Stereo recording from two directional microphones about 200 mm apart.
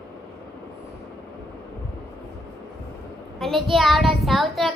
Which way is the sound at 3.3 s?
Centre (ahead or behind).